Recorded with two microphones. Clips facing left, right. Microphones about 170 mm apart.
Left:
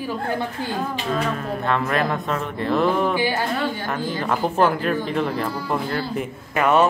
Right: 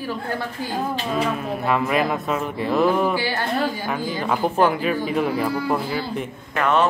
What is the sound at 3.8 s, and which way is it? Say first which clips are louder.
Speech: even; 5° right (ahead or behind).